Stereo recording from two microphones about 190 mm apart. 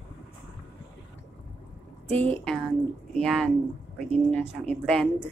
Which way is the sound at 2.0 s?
5° left (ahead or behind).